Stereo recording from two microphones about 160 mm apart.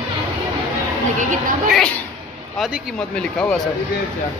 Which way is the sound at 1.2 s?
55° right (ahead or behind).